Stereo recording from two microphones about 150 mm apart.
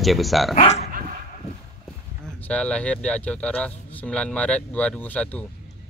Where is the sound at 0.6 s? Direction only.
45° left (ahead or behind).